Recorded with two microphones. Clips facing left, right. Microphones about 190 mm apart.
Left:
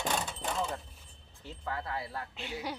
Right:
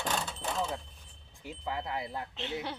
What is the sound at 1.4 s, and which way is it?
Speech, 15° right (ahead or behind).